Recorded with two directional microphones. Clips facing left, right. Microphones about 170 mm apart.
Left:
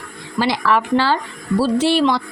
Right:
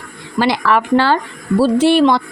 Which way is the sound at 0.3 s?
60° right (ahead or behind).